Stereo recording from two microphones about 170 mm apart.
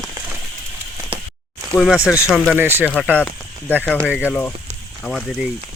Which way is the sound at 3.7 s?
10° left (ahead or behind).